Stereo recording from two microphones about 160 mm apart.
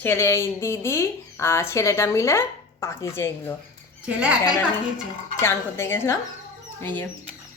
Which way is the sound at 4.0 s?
5° right (ahead or behind).